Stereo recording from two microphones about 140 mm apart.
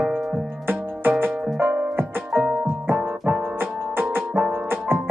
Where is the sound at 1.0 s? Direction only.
15° right (ahead or behind).